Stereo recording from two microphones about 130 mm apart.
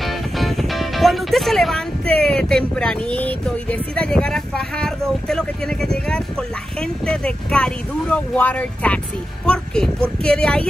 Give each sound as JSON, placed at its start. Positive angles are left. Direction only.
{"t": 0.0, "sound": "speech", "side_deg": 0}